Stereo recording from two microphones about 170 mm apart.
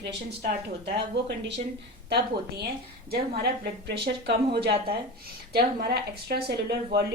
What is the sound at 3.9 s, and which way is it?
Speech, 75° right (ahead or behind).